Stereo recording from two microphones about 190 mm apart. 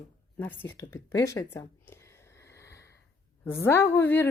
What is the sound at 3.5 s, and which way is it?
Speech, 10° left (ahead or behind).